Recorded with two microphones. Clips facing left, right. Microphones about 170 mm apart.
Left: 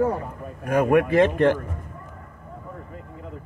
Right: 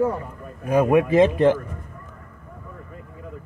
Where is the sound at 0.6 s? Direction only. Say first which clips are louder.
Right 1 dB; 20° right (ahead or behind).